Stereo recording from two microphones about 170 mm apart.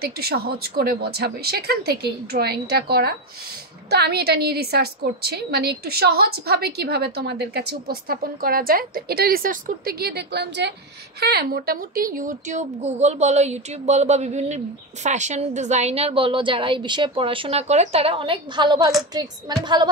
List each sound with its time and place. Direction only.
0.0 s a woman's voice: 65° right (ahead or behind); by 10.7 s 85° right
11.1 s a woman's voice: 70° right (ahead or behind); by 19.9 s 25° right (ahead or behind)